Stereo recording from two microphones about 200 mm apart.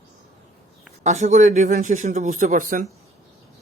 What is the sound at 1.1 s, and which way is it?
Speech, 35° right (ahead or behind).